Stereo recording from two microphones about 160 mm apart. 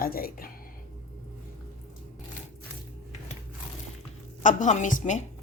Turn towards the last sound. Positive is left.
turn(degrees=50)  # may be behind; listen again after turning